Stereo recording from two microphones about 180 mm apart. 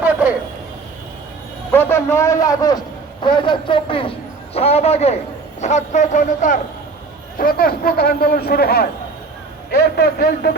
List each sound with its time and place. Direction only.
1.7 s a man's voice: 10° left (ahead or behind); by 10.5 s 60° left (ahead or behind)